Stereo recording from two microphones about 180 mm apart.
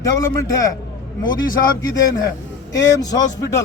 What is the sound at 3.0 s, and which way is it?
Speech, 20° left (ahead or behind).